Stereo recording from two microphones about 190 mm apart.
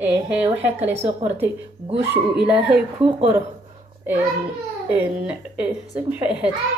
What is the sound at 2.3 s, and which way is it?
Speech, 5° right (ahead or behind).